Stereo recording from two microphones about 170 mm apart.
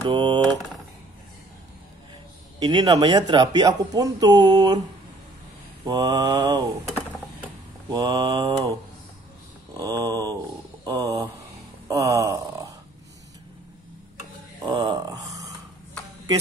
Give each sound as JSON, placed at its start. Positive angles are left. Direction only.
{"t": 0.1, "sound": "speech", "side_deg": -25}
{"t": 2.6, "sound": "speech", "side_deg": -25}
{"t": 5.9, "sound": "speech", "side_deg": -25}
{"t": 7.9, "sound": "speech", "side_deg": -25}
{"t": 9.8, "sound": "a sound", "side_deg": -20}
{"t": 10.9, "sound": "speech", "side_deg": -20}
{"t": 14.7, "sound": "a sound", "side_deg": -25}